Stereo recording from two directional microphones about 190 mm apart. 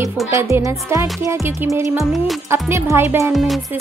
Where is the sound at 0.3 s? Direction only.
15° right (ahead or behind).